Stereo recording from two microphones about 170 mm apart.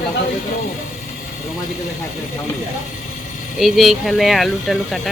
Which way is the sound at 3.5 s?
Centre (ahead or behind).